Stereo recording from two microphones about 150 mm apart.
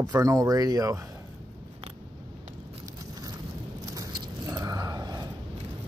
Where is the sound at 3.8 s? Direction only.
25° right (ahead or behind).